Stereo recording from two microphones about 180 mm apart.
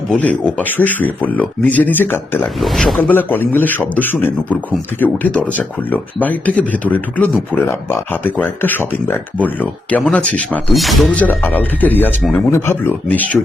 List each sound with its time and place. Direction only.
0.1 s speech: 5° left (ahead or behind)
2.6 s speech: centre (ahead or behind)